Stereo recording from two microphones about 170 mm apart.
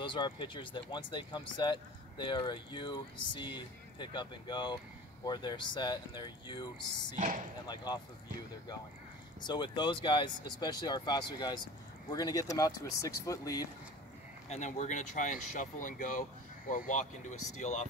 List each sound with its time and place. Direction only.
0.0 s speech: 30° left (ahead or behind)
7.2 s speech: 50° right (ahead or behind)
7.6 s speech: 25° left (ahead or behind)
9.4 s speech: 25° left (ahead or behind)
14.5 s speech: 45° left (ahead or behind)